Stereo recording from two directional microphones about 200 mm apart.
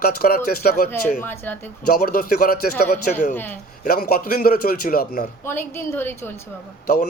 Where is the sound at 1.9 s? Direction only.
45° left (ahead or behind).